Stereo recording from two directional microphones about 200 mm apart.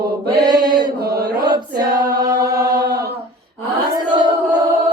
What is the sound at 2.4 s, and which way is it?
Chant, 15° right (ahead or behind).